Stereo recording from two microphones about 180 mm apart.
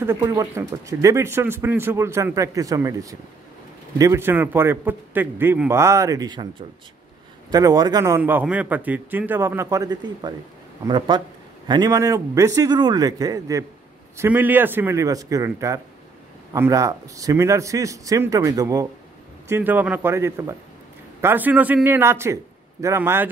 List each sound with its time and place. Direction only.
0.0 s speech: 15° right (ahead or behind)
7.5 s a man's voice: 20° right (ahead or behind)